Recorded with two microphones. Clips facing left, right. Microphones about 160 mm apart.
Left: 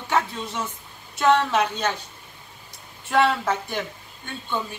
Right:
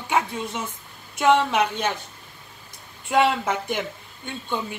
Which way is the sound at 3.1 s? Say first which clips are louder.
Even; 15° right (ahead or behind).